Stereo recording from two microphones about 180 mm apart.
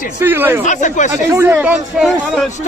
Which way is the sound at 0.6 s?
45° left (ahead or behind).